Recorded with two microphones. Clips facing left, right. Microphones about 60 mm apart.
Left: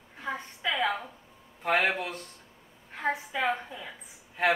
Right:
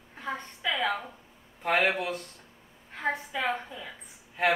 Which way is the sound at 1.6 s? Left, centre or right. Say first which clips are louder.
Right 1 dB; centre.